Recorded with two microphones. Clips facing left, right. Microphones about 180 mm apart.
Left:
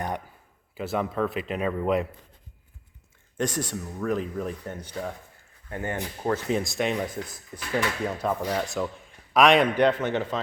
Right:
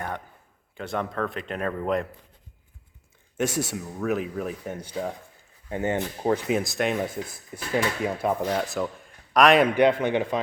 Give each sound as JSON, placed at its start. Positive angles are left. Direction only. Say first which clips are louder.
{"t": 0.8, "sound": "a man's voice", "louder": "left 2 dB", "side_deg": 5}
{"t": 3.3, "sound": "speech", "louder": "right 2 dB", "side_deg": -5}
{"t": 6.6, "sound": "a man's voice", "louder": "right 1 dB", "side_deg": 0}